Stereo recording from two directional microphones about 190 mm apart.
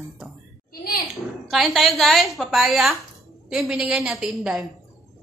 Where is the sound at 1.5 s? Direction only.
Centre (ahead or behind).